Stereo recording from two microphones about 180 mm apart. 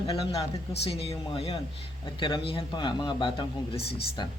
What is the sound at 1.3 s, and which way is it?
A woman's voice, 35° left (ahead or behind).